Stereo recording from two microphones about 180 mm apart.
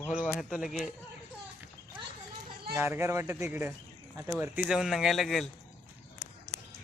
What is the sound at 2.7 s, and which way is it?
Speech, 15° right (ahead or behind).